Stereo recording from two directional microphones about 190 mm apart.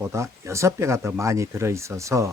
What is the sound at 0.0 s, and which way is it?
Speech, 15° right (ahead or behind).